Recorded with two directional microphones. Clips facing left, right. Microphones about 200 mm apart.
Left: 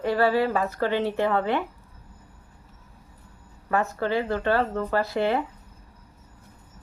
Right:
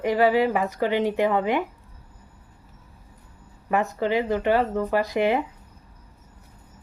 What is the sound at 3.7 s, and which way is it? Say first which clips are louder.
Speech: right 2 dB; 15° right (ahead or behind).